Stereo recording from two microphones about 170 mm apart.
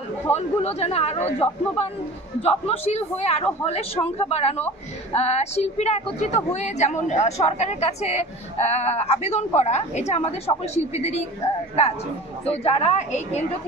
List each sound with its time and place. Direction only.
0.3 s a woman's voice: 40° left (ahead or behind)
12.6 s a woman's voice: 40° left (ahead or behind)